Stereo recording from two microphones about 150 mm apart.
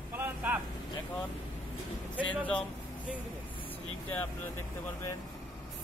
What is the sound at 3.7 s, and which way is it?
Speech, 10° left (ahead or behind).